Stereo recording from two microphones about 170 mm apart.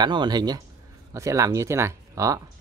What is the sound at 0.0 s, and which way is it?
Speech, 25° right (ahead or behind).